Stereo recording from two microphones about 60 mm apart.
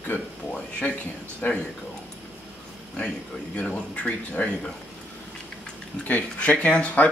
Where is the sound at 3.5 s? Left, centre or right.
Left.